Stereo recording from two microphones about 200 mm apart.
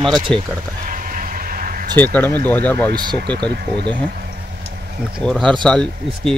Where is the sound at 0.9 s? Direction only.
45° right (ahead or behind).